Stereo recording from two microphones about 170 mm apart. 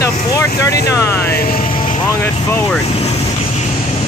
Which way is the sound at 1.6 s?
30° left (ahead or behind).